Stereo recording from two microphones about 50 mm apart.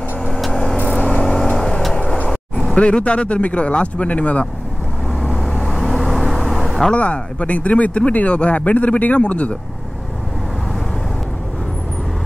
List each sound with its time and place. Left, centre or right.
0.7 s vehicle: left
1.0 s vehicle: centre
2.0 s vehicle: centre
2.7 s speech: left
5.2 s vehicle: centre
7.0 s speech: left